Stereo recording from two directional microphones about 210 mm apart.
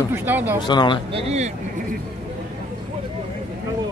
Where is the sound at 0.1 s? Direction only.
10° right (ahead or behind).